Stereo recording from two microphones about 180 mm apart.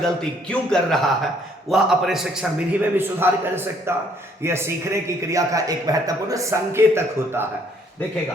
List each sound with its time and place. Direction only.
0.0 s a man's voice: 5° left (ahead or behind); by 7.4 s 15° right (ahead or behind)